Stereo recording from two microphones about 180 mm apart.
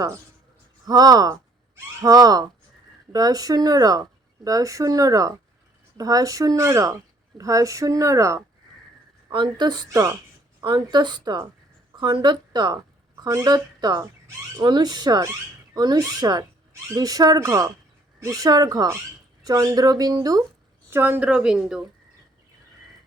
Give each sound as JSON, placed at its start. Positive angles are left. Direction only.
{"t": 0.9, "sound": "a woman's voice", "side_deg": -20}